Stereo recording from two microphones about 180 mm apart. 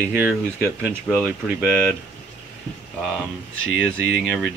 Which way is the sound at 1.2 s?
5° right (ahead or behind).